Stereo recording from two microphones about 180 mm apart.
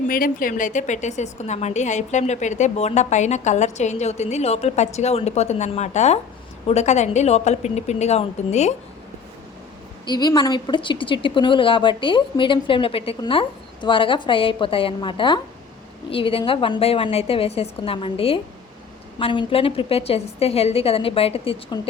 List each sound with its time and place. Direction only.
0.1 s a woman's voice: 50° left (ahead or behind)
10.1 s a woman's voice: 25° left (ahead or behind)